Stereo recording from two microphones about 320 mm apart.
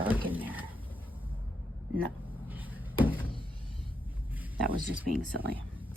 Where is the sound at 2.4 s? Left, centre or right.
Centre.